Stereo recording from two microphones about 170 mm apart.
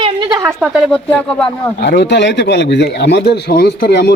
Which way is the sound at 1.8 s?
90° left.